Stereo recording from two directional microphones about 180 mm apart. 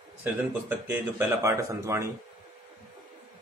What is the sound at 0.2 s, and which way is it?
Speech, 10° right (ahead or behind).